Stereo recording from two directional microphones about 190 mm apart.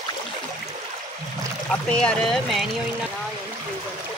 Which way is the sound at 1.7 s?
5° left (ahead or behind).